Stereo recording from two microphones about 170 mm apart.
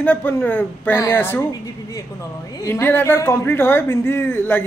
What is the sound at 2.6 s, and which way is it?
A man's voice, 15° left (ahead or behind).